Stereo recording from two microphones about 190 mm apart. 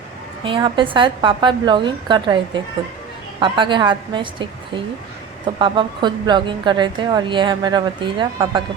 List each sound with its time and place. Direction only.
0.4 s a woman's voice: 25° right (ahead or behind)
3.4 s a woman's voice: 25° right (ahead or behind)